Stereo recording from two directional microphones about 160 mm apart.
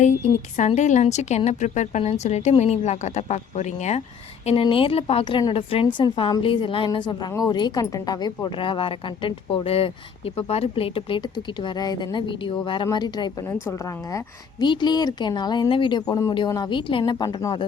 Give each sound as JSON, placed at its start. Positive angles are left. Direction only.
{"t": 0.5, "sound": "a woman's voice", "side_deg": 45}
{"t": 4.4, "sound": "a woman's voice", "side_deg": 35}